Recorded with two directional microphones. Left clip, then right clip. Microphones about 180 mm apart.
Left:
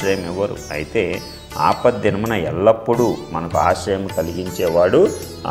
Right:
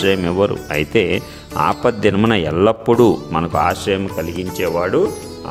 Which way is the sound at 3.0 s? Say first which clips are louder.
Right 5 dB; 55° right (ahead or behind).